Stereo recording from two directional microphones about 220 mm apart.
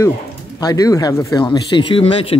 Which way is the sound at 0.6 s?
15° left (ahead or behind).